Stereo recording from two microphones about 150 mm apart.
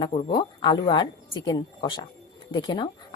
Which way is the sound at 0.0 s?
30° left (ahead or behind).